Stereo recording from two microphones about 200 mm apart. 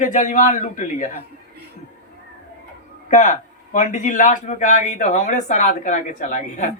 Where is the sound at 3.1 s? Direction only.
40° left (ahead or behind).